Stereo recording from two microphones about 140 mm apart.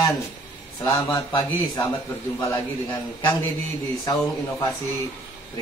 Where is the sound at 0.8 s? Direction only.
20° left (ahead or behind).